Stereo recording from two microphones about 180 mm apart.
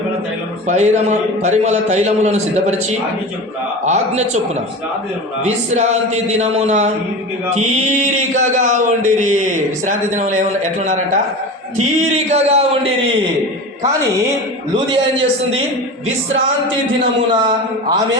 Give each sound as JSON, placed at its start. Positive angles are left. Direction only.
{"t": 0.7, "sound": "a man's voice", "side_deg": -40}
{"t": 3.8, "sound": "a man's voice", "side_deg": -40}
{"t": 5.7, "sound": "a man's voice", "side_deg": -40}
{"t": 17.4, "sound": "a man's voice", "side_deg": -20}